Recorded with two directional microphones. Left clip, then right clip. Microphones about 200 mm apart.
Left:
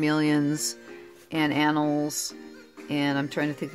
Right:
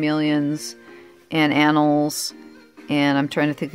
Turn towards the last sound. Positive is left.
turn(degrees=-40)  # may be behind; listen again after turning